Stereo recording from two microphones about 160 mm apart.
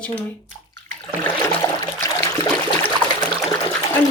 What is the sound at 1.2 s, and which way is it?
Water, 20° left (ahead or behind).